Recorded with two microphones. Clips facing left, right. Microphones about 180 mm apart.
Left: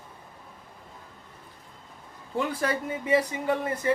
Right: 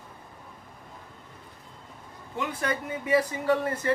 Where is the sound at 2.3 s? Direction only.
30° left (ahead or behind).